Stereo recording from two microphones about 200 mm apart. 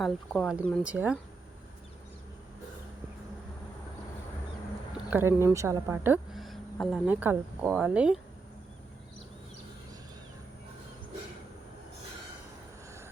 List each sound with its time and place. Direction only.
0.0 s speech: centre (ahead or behind)
5.1 s a woman's voice: 15° right (ahead or behind)